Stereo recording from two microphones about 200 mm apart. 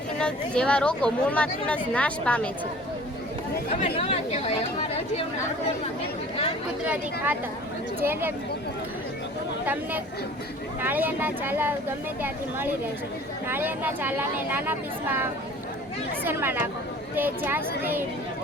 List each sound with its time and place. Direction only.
0.2 s speech: 5° left (ahead or behind)
3.7 s speech: 30° left (ahead or behind)
6.8 s speech: 5° right (ahead or behind)
10.8 s speech: 10° right (ahead or behind)